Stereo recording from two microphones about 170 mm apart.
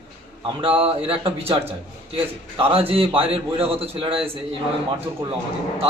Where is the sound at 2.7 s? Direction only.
35° right (ahead or behind).